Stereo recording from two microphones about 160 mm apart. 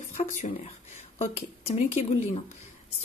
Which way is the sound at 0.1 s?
50° left (ahead or behind).